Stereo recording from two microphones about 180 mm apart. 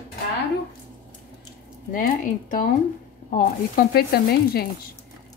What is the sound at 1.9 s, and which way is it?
Speech, 50° left (ahead or behind).